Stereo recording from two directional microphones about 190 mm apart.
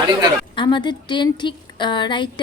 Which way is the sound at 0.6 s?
25° left (ahead or behind).